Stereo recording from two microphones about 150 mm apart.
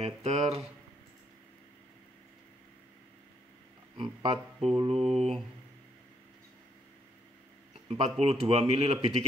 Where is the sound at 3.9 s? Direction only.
35° right (ahead or behind).